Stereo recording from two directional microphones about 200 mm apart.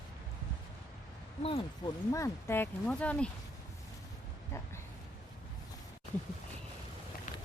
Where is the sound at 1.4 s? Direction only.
25° left (ahead or behind); by 3.3 s 5° left (ahead or behind).